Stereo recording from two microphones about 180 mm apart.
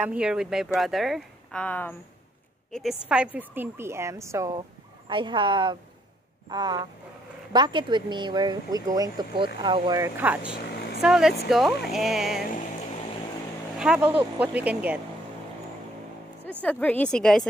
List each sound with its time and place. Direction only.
0.0 s speech: 5° right (ahead or behind); by 2.0 s 10° left (ahead or behind)
2.7 s a woman's voice: centre (ahead or behind)
13.7 s a woman's voice: 5° right (ahead or behind)
16.6 s speech: 5° left (ahead or behind)